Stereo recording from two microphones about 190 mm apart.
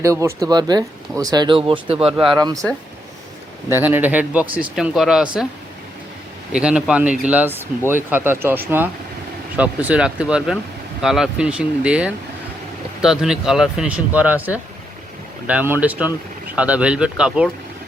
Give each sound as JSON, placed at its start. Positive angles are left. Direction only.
{"t": 0.0, "sound": "speech", "side_deg": -15}
{"t": 3.7, "sound": "speech", "side_deg": -10}
{"t": 6.5, "sound": "speech", "side_deg": -5}
{"t": 15.4, "sound": "speech", "side_deg": -10}